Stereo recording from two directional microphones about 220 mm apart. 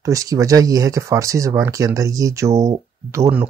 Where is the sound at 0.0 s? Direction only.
15° right (ahead or behind).